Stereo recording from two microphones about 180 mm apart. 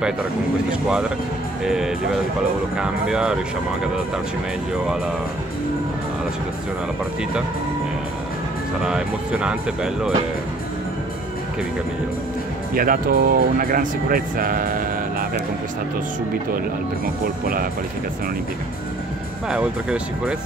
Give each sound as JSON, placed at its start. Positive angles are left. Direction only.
{"t": 0.7, "sound": "speech", "side_deg": -5}
{"t": 8.8, "sound": "speech", "side_deg": -5}
{"t": 12.7, "sound": "speech", "side_deg": -50}
{"t": 19.5, "sound": "speech", "side_deg": -5}